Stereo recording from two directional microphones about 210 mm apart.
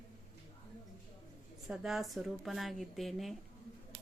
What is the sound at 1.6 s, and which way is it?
A woman's voice, centre (ahead or behind).